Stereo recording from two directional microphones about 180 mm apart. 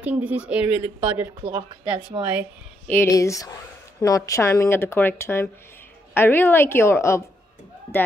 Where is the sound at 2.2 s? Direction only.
30° right (ahead or behind).